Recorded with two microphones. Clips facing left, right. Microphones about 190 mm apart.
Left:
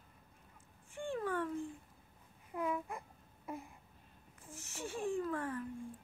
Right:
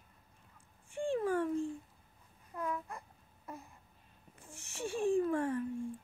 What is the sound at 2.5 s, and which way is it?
Babbling, 15° left (ahead or behind).